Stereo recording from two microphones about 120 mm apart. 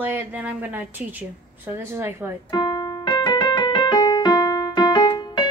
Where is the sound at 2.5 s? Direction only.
35° left (ahead or behind).